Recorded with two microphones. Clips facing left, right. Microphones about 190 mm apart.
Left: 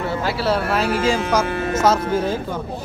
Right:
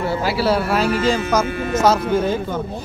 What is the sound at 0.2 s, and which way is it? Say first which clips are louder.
Speech: right 2 dB; 5° right (ahead or behind).